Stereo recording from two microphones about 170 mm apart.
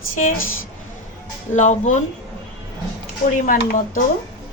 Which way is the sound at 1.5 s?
45° left (ahead or behind).